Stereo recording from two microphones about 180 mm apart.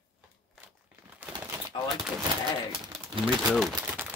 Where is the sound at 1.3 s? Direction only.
20° right (ahead or behind).